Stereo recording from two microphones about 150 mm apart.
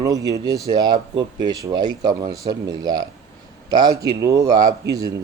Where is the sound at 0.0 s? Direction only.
25° right (ahead or behind).